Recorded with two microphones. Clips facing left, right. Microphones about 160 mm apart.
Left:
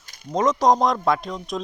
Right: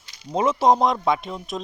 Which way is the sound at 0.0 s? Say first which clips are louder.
Left 1 dB; 45° left (ahead or behind).